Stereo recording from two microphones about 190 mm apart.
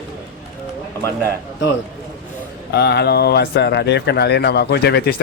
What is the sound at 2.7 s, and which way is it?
Speech, 60° left (ahead or behind).